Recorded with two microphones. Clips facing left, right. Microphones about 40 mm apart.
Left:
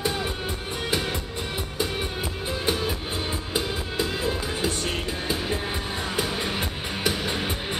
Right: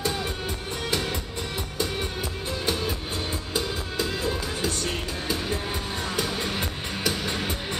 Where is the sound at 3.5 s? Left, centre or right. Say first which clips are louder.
Left 1 dB; centre.